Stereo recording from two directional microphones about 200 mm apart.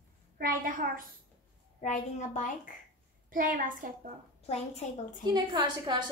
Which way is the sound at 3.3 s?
40° right (ahead or behind).